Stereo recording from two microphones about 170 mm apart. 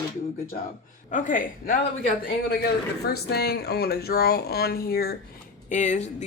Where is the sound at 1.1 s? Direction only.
50° left (ahead or behind).